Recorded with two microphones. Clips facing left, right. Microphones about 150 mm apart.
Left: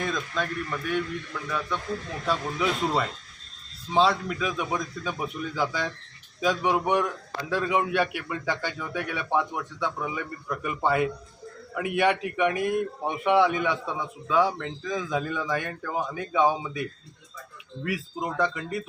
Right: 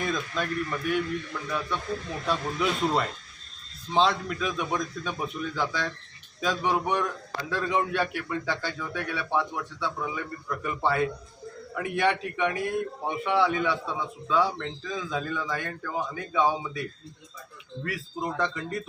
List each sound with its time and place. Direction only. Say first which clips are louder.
0.0 s speech: even; 5° right (ahead or behind)
2.2 s a man's voice: left 1 dB; centre (ahead or behind)
17.8 s a man's voice: left 2 dB; 15° left (ahead or behind)